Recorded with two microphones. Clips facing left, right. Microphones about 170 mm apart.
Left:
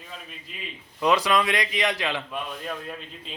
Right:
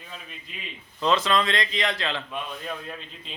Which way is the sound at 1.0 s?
15° left (ahead or behind).